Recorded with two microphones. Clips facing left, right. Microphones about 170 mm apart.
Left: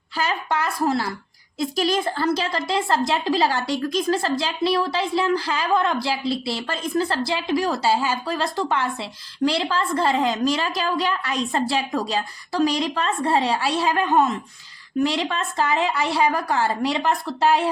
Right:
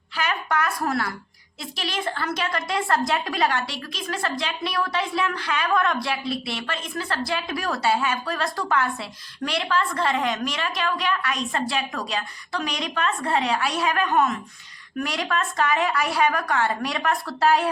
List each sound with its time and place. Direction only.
0.2 s a woman's voice: 30° left (ahead or behind)
1.5 s a woman's voice: 40° left (ahead or behind)
3.7 s a woman's voice: 40° left (ahead or behind)
4.2 s a woman's voice: 30° left (ahead or behind)